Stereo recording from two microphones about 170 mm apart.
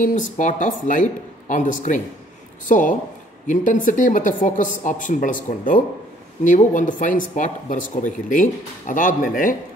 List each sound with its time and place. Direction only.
0.0 s speech: 50° left (ahead or behind)